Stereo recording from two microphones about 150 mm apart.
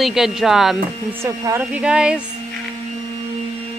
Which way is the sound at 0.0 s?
5° right (ahead or behind).